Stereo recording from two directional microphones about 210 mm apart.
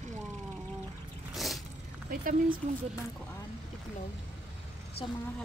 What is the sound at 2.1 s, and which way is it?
Speech, 40° right (ahead or behind).